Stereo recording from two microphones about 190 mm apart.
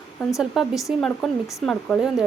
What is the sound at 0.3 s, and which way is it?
Speech, centre (ahead or behind).